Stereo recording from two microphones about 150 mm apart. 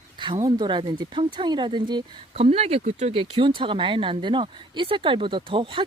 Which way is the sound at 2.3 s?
40° right (ahead or behind).